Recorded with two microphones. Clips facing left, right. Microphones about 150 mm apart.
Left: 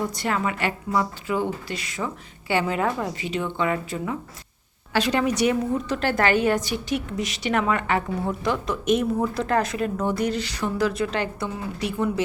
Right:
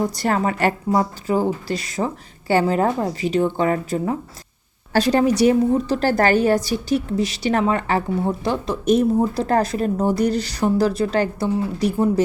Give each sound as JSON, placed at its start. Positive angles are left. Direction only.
{"t": 0.0, "sound": "a woman's voice", "side_deg": -35}